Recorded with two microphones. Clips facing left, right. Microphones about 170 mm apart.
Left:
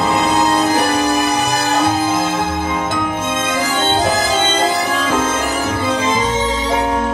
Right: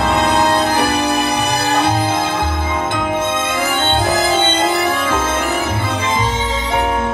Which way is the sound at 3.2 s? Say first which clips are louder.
Even; 60° right (ahead or behind).